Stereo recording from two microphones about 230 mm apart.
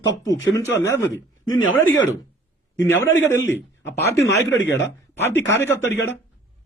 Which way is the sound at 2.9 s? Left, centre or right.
Centre.